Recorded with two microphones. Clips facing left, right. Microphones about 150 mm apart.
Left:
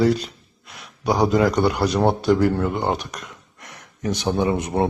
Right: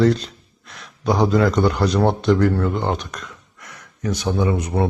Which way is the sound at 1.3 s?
15° left (ahead or behind).